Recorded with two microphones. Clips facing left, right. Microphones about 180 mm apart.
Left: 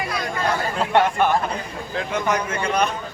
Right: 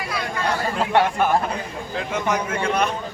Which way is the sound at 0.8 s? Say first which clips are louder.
Left 1 dB; 5° right (ahead or behind).